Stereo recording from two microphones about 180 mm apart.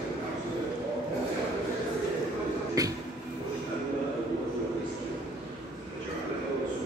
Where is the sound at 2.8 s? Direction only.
20° right (ahead or behind).